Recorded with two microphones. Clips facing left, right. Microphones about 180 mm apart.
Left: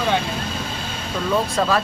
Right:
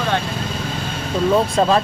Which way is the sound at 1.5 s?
25° right (ahead or behind).